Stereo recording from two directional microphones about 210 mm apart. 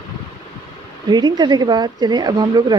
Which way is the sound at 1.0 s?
20° right (ahead or behind).